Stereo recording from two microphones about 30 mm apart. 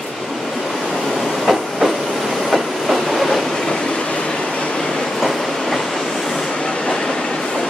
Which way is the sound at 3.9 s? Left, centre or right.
Left.